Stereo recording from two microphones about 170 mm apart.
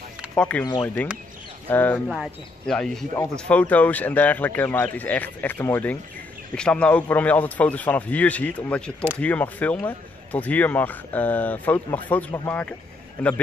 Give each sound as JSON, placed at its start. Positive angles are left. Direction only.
{"t": 0.4, "sound": "speech", "side_deg": 10}
{"t": 2.0, "sound": "speech", "side_deg": 0}